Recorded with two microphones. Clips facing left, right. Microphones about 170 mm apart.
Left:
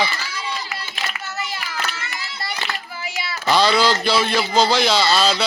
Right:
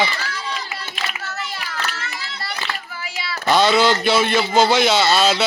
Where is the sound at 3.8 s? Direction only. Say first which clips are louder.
Right 2 dB; centre (ahead or behind).